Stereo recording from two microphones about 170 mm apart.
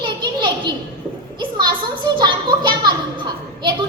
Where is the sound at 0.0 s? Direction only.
25° right (ahead or behind).